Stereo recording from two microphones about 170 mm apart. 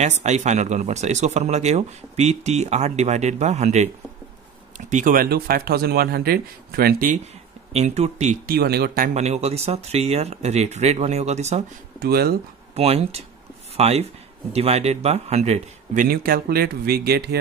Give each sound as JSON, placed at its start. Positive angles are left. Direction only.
{"t": 0.2, "sound": "speech", "side_deg": -40}
{"t": 7.7, "sound": "speech", "side_deg": -40}
{"t": 8.5, "sound": "speech", "side_deg": -65}
{"t": 9.1, "sound": "speech", "side_deg": -40}
{"t": 12.0, "sound": "speech", "side_deg": -65}
{"t": 12.7, "sound": "speech", "side_deg": -35}